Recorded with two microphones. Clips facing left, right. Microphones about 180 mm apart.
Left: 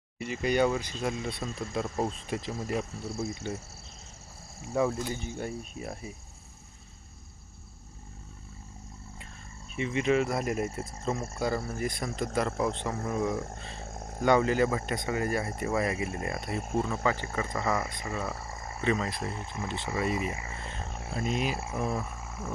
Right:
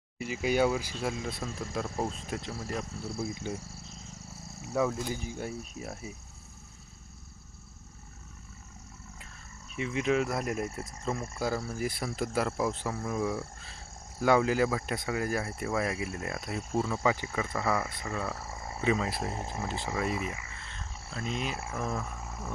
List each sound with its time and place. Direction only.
0.3 s speech: 5° right (ahead or behind)
4.7 s speech: centre (ahead or behind)
9.7 s speech: centre (ahead or behind)
17.7 s speech: 15° left (ahead or behind)
18.2 s speech: centre (ahead or behind)
19.3 s speech: 40° right (ahead or behind)
19.6 s speech: centre (ahead or behind)
20.3 s a sound: 40° left (ahead or behind)
20.7 s a sound: 65° left (ahead or behind)
21.3 s speech: 5° left (ahead or behind)
21.6 s speech: 15° left (ahead or behind)
21.8 s a sound: 5° left (ahead or behind)